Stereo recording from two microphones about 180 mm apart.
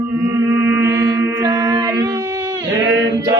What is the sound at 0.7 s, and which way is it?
Mantra, 15° right (ahead or behind).